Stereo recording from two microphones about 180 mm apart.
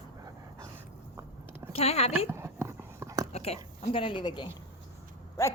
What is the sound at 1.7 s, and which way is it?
Speech, 35° left (ahead or behind).